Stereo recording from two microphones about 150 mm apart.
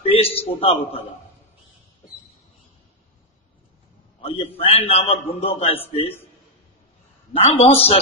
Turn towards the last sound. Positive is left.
turn(degrees=40)  # may be behind; listen again after turning